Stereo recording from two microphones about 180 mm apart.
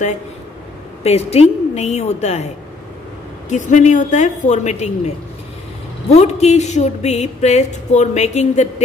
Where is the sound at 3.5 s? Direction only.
40° left (ahead or behind).